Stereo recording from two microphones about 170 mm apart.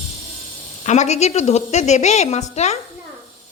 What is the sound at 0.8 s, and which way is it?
Speech, 40° left (ahead or behind).